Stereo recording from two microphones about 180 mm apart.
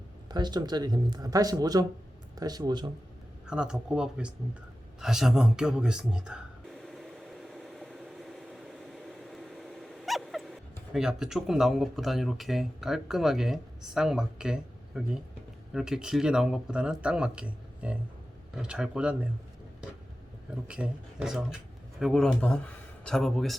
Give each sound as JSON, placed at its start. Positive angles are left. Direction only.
{"t": 0.3, "sound": "speech", "side_deg": -25}
{"t": 3.4, "sound": "speech", "side_deg": -5}
{"t": 4.9, "sound": "a sound", "side_deg": 0}
{"t": 15.7, "sound": "speech", "side_deg": -5}
{"t": 20.7, "sound": "speech", "side_deg": -5}